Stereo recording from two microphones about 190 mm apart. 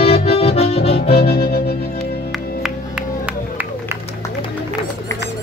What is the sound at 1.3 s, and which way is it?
Music, 55° left (ahead or behind).